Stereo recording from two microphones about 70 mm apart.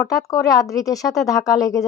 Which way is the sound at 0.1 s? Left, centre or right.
Left.